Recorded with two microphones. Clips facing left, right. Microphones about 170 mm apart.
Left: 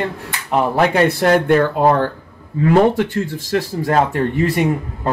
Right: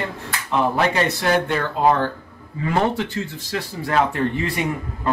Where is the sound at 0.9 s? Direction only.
60° left (ahead or behind).